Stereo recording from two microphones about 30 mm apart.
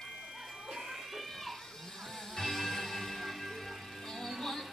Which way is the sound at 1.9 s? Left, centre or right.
Centre.